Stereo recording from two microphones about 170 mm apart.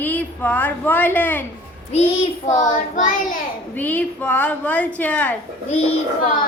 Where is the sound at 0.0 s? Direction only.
10° left (ahead or behind).